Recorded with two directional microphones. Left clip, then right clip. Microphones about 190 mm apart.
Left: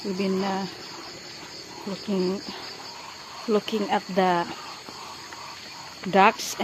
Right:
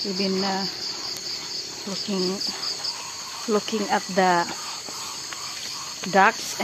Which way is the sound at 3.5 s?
5° left (ahead or behind).